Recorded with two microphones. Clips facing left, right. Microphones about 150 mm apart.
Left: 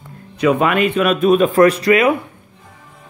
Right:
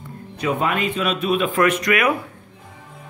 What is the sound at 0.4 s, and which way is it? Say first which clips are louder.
A man's voice: left 7 dB; 80° left.